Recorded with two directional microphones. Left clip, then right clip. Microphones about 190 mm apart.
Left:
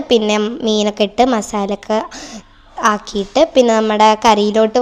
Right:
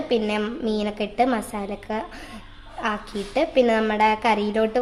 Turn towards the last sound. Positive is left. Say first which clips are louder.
# left 9 dB
turn(degrees=35)  # may be behind; listen again after turning